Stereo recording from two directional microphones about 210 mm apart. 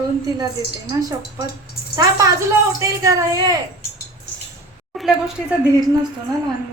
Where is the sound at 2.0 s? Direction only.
15° right (ahead or behind).